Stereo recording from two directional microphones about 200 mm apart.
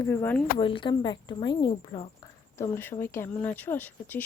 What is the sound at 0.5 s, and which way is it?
Speech, 25° left (ahead or behind).